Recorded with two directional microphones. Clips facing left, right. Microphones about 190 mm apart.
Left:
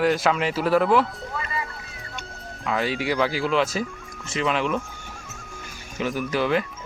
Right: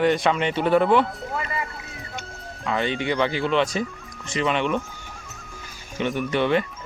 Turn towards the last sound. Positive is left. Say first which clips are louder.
# right 1 dB
turn(degrees=0)  # may be behind; listen again after turning